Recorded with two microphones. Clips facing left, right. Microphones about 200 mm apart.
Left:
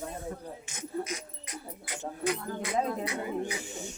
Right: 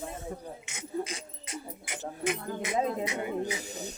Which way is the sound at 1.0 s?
30° right (ahead or behind).